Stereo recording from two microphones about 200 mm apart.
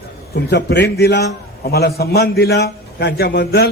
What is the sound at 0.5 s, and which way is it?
A man's voice, 60° left (ahead or behind).